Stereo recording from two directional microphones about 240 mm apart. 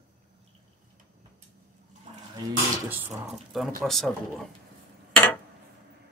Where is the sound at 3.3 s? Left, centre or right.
Centre.